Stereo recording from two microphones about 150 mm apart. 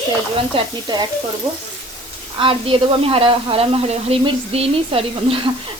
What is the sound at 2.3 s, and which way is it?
Speech, 35° right (ahead or behind).